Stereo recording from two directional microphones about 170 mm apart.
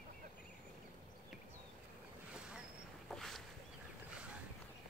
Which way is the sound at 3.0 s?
Centre (ahead or behind).